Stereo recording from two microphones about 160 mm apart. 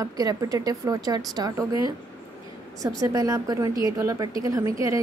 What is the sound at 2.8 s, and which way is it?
A woman's voice, 20° right (ahead or behind).